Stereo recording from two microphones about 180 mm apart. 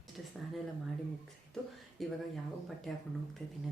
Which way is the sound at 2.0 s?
Centre (ahead or behind).